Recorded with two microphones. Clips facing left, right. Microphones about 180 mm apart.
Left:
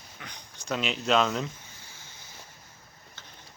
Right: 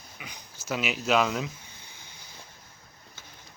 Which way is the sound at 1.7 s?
15° right (ahead or behind).